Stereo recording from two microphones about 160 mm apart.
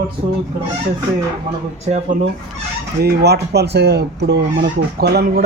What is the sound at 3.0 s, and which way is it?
Speech, 85° right.